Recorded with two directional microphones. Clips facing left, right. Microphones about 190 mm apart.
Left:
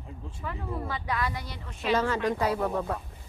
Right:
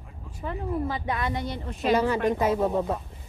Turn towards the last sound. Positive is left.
turn(degrees=-20)  # may be behind; listen again after turning